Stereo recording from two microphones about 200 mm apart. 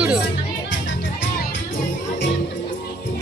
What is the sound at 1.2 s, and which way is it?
Music, 65° left (ahead or behind).